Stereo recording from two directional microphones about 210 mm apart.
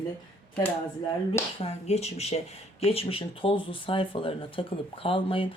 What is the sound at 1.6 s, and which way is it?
Speech, 30° left (ahead or behind).